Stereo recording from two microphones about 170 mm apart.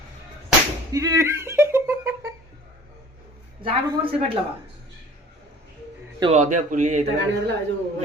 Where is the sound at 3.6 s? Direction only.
30° right (ahead or behind).